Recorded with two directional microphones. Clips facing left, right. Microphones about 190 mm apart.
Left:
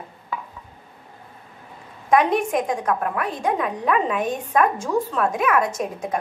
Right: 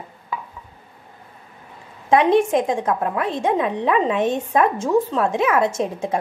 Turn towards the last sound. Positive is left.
turn(degrees=-25)  # may be behind; listen again after turning